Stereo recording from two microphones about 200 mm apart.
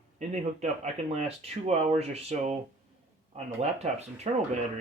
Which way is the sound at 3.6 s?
30° right (ahead or behind).